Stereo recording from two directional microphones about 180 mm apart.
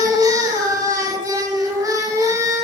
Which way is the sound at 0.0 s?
20° right (ahead or behind).